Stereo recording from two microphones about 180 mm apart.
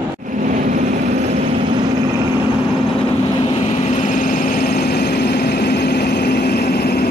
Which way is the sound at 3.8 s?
40° left (ahead or behind).